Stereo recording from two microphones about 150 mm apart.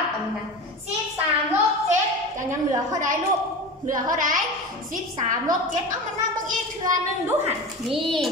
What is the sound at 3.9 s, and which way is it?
Speech, 65° right (ahead or behind).